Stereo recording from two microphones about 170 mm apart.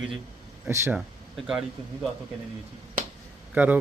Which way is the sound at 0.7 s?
15° right (ahead or behind).